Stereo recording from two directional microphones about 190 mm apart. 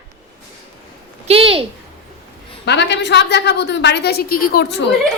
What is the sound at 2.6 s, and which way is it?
A woman's voice, 65° left (ahead or behind).